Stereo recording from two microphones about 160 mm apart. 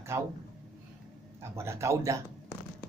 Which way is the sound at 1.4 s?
15° right (ahead or behind).